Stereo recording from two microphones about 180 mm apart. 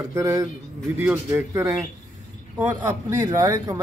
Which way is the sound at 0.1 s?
20° right (ahead or behind).